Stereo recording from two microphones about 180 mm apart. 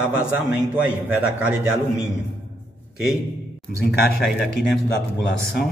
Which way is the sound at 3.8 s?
60° left (ahead or behind).